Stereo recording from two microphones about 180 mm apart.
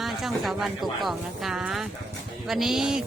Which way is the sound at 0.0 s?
Centre (ahead or behind).